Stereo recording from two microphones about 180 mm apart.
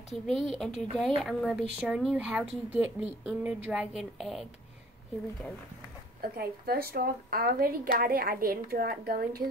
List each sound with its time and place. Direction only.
0.1 s speech: centre (ahead or behind)
6.2 s speech: 55° right (ahead or behind)